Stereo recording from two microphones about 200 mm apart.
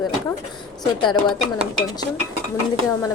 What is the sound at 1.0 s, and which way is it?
Speech, 25° left (ahead or behind).